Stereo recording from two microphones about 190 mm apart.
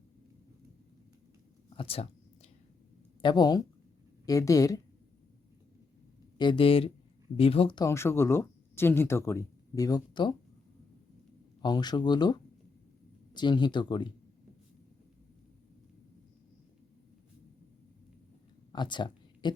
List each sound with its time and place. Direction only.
1.7 s whispering: 30° left (ahead or behind)
3.2 s speech: 25° left (ahead or behind)
6.3 s speech: 25° left (ahead or behind)
7.9 s speech: 15° left (ahead or behind)
11.6 s speech: 20° left (ahead or behind)
18.7 s a sound: 25° left (ahead or behind)